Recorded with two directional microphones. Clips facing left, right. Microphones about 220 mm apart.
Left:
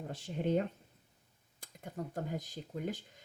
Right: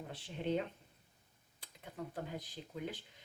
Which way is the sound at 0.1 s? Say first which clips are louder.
Left 4 dB; 45° left (ahead or behind).